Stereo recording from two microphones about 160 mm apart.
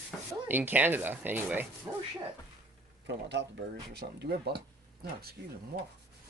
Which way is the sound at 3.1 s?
90° right.